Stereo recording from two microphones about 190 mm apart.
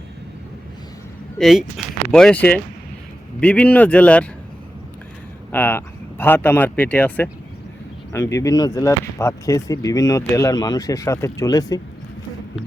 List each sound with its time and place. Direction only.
1.4 s speech: centre (ahead or behind)
5.5 s speech: 10° left (ahead or behind)